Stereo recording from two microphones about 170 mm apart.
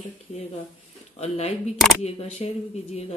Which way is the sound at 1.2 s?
40° left (ahead or behind).